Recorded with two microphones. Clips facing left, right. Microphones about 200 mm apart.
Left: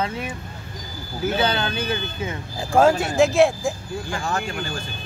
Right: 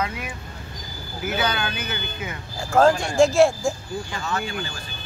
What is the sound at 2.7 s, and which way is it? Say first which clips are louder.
Speech: even; 5° left (ahead or behind).